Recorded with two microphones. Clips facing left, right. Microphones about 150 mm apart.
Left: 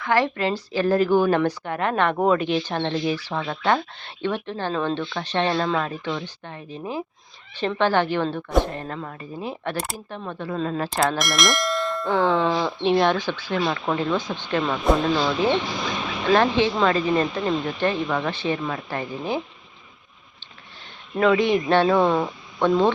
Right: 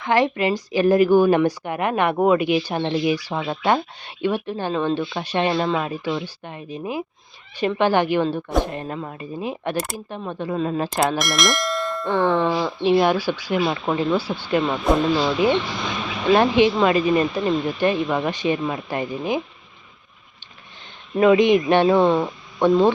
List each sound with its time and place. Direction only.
0.0 s a woman's voice: 20° right (ahead or behind)
11.2 s a woman's voice: centre (ahead or behind)
21.2 s a woman's voice: 15° right (ahead or behind)